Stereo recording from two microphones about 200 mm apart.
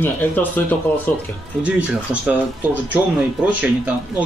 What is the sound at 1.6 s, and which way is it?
Speech, 5° right (ahead or behind).